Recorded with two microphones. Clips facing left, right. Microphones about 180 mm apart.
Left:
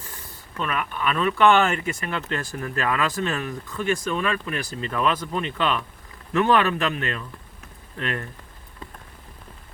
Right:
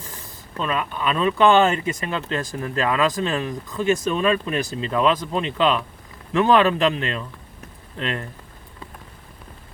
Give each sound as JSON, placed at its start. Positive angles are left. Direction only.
{"t": 0.6, "sound": "speech", "side_deg": -20}
{"t": 3.2, "sound": "speech", "side_deg": -30}